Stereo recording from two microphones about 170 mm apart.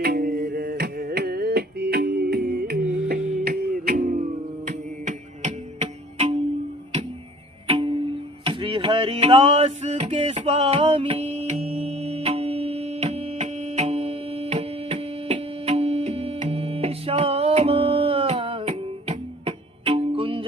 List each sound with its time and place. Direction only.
0.0 s music: 60° right (ahead or behind)
2.8 s music: 5° right (ahead or behind)
3.1 s music: 55° right (ahead or behind); by 6.3 s 40° right (ahead or behind)
7.7 s music: 30° right (ahead or behind)
8.4 s a sound: 30° right (ahead or behind)